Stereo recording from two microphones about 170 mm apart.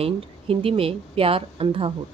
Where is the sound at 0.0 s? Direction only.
35° right (ahead or behind).